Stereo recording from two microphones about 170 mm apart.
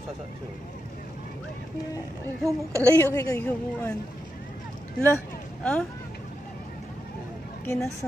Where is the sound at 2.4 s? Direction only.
20° right (ahead or behind).